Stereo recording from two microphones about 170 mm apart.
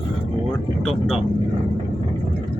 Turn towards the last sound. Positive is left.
turn(degrees=0)  # may be behind; listen again after turning